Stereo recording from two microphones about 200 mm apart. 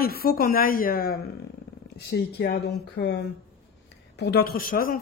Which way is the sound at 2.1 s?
55° left (ahead or behind).